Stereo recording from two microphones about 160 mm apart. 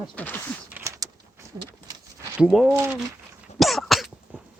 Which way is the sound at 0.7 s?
20° right (ahead or behind).